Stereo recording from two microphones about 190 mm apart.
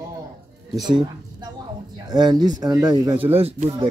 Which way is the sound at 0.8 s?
20° right (ahead or behind).